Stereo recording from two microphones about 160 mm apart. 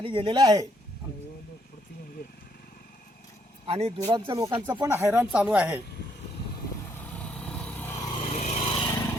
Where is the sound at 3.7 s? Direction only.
40° right (ahead or behind).